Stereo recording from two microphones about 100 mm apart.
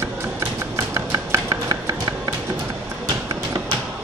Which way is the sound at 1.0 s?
40° right (ahead or behind).